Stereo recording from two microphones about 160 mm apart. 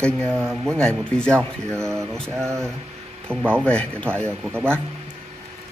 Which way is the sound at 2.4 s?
15° right (ahead or behind).